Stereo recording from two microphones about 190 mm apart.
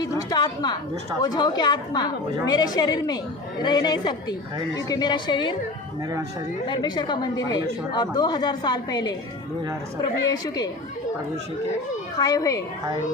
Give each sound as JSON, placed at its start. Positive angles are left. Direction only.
{"t": 0.0, "sound": "a woman's voice", "side_deg": 20}
{"t": 6.6, "sound": "a woman's voice", "side_deg": 25}
{"t": 10.2, "sound": "a woman's voice", "side_deg": 20}
{"t": 12.2, "sound": "a woman's voice", "side_deg": 20}